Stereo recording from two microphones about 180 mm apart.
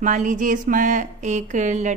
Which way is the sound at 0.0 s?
45° right (ahead or behind).